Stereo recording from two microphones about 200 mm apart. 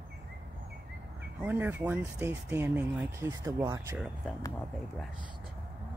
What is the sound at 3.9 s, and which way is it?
Speech, centre (ahead or behind).